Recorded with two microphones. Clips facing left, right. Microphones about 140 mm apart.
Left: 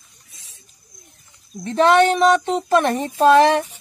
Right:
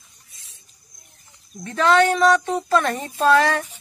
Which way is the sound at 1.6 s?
25° left (ahead or behind).